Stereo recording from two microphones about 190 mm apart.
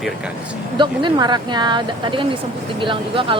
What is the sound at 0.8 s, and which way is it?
Speech, 25° right (ahead or behind).